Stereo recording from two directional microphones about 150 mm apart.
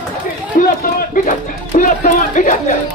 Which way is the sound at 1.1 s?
60° left (ahead or behind).